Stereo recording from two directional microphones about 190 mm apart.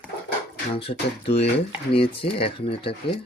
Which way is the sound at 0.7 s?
30° left (ahead or behind).